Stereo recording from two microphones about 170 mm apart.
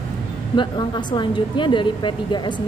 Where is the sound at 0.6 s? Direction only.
25° left (ahead or behind).